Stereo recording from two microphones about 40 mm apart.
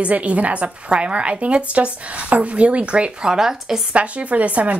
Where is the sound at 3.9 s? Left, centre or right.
Right.